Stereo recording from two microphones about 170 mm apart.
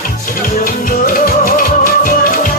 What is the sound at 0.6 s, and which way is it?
Music, 55° left (ahead or behind).